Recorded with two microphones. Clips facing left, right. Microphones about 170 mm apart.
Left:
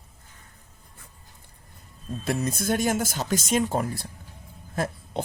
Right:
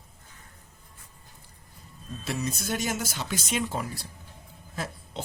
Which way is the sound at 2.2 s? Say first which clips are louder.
Left 5 dB; 50° left (ahead or behind).